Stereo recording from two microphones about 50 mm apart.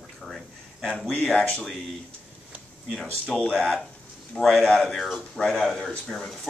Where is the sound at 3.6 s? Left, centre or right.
Centre.